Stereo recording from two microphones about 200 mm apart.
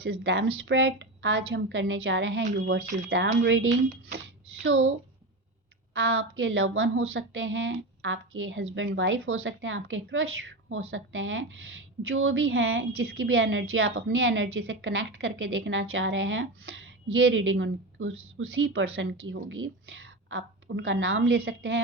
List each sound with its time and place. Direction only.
0.0 s speech: 50° right (ahead or behind)
0.3 s a woman's voice: 75° right (ahead or behind); by 3.2 s 45° right (ahead or behind)
3.4 s a woman's voice: 65° right (ahead or behind)
5.9 s a woman's voice: 80° right
12.0 s a woman's voice: 85° right; by 18.9 s 70° right (ahead or behind)
18.9 s a woman's voice: 80° right; by 21.8 s 55° right (ahead or behind)